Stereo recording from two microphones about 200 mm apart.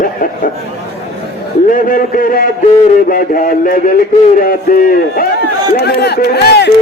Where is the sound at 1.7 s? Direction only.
45° left (ahead or behind).